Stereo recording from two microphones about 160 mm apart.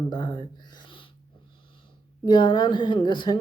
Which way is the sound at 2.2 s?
30° left (ahead or behind).